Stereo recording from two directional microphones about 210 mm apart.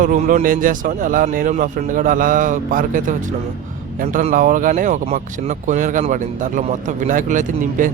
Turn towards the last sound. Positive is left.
turn(degrees=-40)  # may be behind; listen again after turning